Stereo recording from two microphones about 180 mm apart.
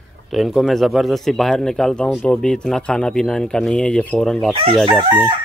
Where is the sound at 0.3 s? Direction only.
Centre (ahead or behind).